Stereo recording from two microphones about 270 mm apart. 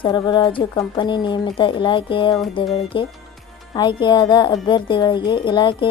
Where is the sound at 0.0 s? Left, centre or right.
Centre.